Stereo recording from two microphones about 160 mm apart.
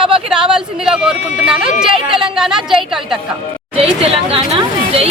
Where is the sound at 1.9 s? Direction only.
35° right (ahead or behind).